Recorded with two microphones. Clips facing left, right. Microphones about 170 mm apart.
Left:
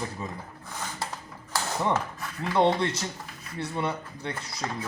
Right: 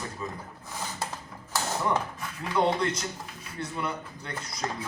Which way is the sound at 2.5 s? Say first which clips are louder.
Left 2 dB; 30° left (ahead or behind).